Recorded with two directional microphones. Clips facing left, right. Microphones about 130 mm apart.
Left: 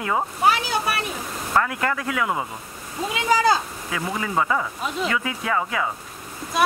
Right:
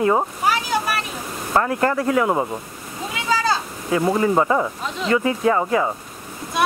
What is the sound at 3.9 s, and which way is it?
Speech, 35° right (ahead or behind).